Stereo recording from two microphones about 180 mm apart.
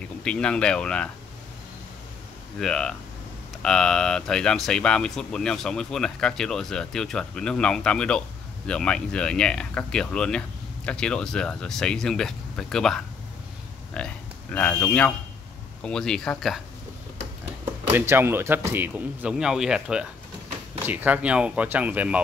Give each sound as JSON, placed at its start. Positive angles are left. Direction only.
{"t": 0.2, "sound": "speech", "side_deg": 5}
{"t": 2.6, "sound": "speech", "side_deg": 5}
{"t": 17.9, "sound": "speech", "side_deg": -15}